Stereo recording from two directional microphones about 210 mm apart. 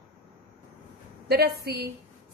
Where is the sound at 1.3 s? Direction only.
50° right (ahead or behind).